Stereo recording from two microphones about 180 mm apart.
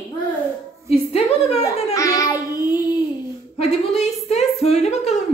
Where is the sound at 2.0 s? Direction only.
15° left (ahead or behind).